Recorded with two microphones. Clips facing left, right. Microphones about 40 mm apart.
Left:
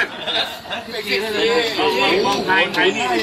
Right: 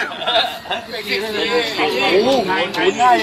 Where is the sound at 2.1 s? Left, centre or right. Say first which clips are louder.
Right 4 dB; right.